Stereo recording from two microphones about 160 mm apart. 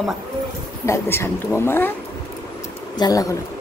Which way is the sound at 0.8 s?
15° left (ahead or behind).